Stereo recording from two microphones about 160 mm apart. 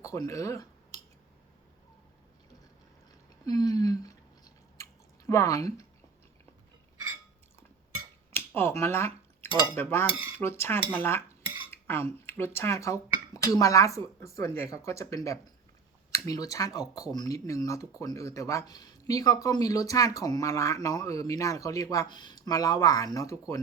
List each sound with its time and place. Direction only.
0.0 s a sound: 20° left (ahead or behind)
3.4 s chewing: 25° left (ahead or behind)
8.4 s a sound: 15° left (ahead or behind)
9.7 s cutlery: 15° left (ahead or behind)
10.1 s cutlery: 10° right (ahead or behind)
10.3 s cutlery: 15° left (ahead or behind)
11.7 s speech: 15° left (ahead or behind)